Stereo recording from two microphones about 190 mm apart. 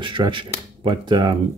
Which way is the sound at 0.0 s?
25° right (ahead or behind).